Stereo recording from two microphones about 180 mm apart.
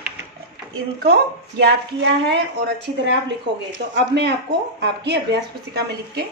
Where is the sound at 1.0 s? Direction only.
60° right (ahead or behind).